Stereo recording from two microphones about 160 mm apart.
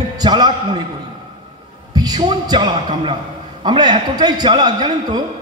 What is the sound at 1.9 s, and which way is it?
A man's voice, 25° right (ahead or behind).